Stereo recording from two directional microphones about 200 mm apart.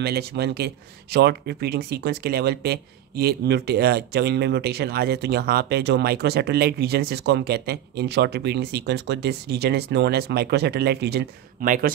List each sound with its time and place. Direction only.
0.0 s speech: 50° right (ahead or behind)